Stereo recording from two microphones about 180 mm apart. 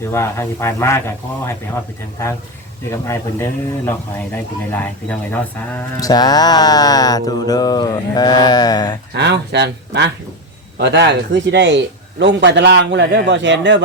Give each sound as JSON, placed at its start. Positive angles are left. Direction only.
{"t": 0.1, "sound": "a man's voice", "side_deg": 15}
{"t": 2.9, "sound": "a man's voice", "side_deg": 15}
{"t": 6.0, "sound": "mantra", "side_deg": 20}
{"t": 9.1, "sound": "a man's voice", "side_deg": -70}